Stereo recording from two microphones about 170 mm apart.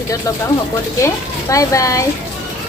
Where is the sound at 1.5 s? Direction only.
20° left (ahead or behind).